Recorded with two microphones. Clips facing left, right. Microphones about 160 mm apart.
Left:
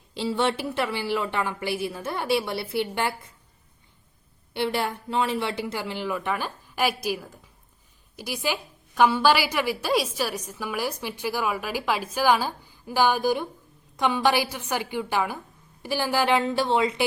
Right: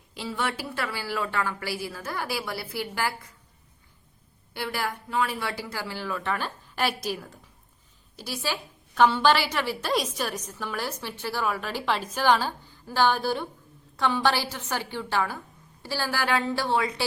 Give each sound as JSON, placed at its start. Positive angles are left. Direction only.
{"t": 0.1, "sound": "a woman's voice", "side_deg": 30}
{"t": 4.5, "sound": "a woman's voice", "side_deg": 25}